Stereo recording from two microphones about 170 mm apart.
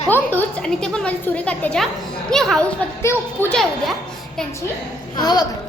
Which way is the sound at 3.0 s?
15° left (ahead or behind).